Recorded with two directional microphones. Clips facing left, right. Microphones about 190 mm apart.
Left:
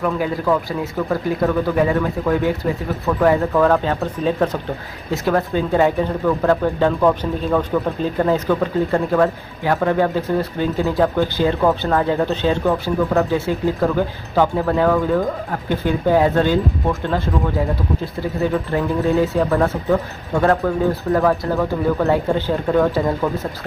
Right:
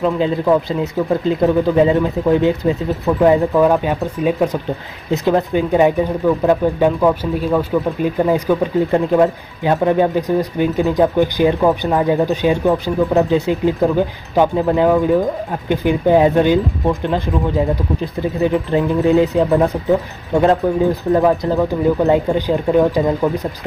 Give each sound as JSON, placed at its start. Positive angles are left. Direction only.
{"t": 0.0, "sound": "speech", "side_deg": -20}